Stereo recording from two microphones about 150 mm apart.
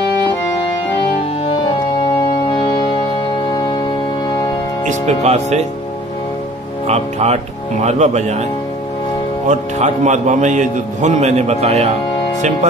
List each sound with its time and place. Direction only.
2.6 s music: 30° left (ahead or behind)
4.8 s speech: 45° right (ahead or behind)
6.9 s speech: 45° right (ahead or behind)
9.5 s a man's voice: 50° right (ahead or behind)